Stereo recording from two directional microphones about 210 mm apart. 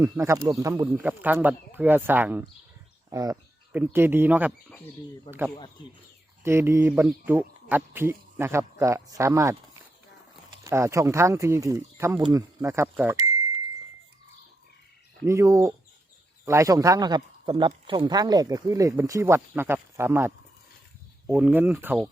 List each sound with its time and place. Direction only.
0.0 s speech: 15° right (ahead or behind)
5.3 s speech: 25° left (ahead or behind)
6.4 s speech: 10° right (ahead or behind)
10.6 s speech: 15° right (ahead or behind)
15.3 s speech: 15° right (ahead or behind)